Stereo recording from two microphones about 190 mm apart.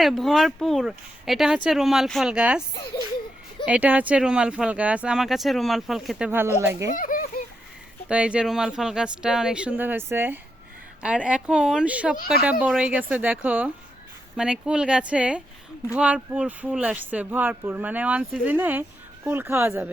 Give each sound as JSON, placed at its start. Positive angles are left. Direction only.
{"t": 0.0, "sound": "speech", "side_deg": 0}
{"t": 3.7, "sound": "speech", "side_deg": -10}
{"t": 6.9, "sound": "speech", "side_deg": 45}
{"t": 8.0, "sound": "speech", "side_deg": -5}